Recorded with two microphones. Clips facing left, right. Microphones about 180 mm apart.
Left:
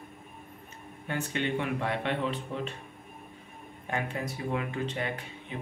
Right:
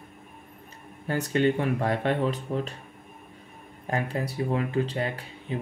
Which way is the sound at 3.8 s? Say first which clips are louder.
Right 4 dB; 35° right (ahead or behind).